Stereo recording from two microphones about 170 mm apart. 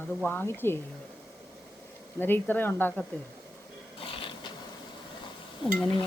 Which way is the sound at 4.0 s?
30° left (ahead or behind).